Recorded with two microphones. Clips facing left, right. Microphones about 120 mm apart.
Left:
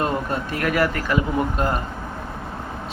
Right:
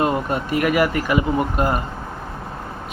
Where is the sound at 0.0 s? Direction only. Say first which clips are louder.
Right 3 dB; 10° right (ahead or behind).